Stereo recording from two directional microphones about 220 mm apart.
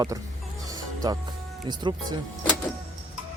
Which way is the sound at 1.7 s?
20° right (ahead or behind).